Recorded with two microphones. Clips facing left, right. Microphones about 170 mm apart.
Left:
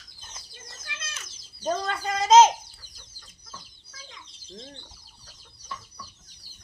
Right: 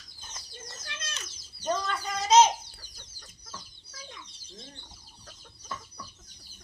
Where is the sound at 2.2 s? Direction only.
90° left.